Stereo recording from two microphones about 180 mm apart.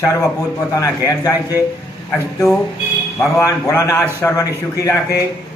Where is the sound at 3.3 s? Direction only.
15° left (ahead or behind).